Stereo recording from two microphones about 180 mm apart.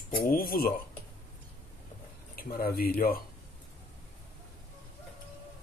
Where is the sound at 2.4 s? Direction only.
55° left (ahead or behind).